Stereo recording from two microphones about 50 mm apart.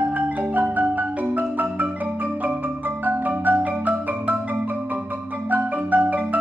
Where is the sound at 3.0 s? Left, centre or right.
Right.